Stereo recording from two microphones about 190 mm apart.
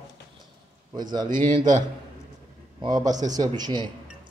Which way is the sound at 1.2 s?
40° right (ahead or behind).